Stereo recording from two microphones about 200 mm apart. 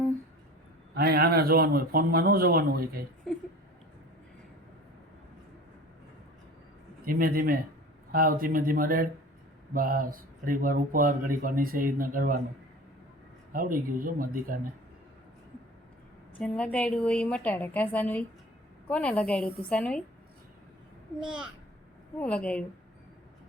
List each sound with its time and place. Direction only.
0.9 s speech: 50° right (ahead or behind)
7.0 s speech: 45° right (ahead or behind)
13.5 s speech: 45° right (ahead or behind)
16.4 s a woman's voice: 5° left (ahead or behind)
21.2 s a woman's voice: 5° right (ahead or behind)
22.2 s a woman's voice: 5° left (ahead or behind)